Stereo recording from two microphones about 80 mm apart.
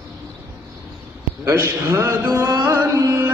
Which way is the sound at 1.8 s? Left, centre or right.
Right.